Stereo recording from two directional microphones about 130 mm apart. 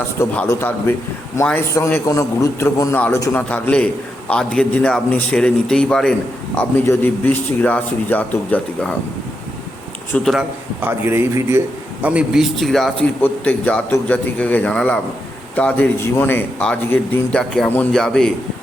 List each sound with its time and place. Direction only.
0.4 s a man's voice: 15° left (ahead or behind)
3.3 s a man's voice: 10° left (ahead or behind)
10.2 s a man's voice: centre (ahead or behind)
10.8 s a man's voice: 15° right (ahead or behind)
12.0 s a man's voice: 5° right (ahead or behind)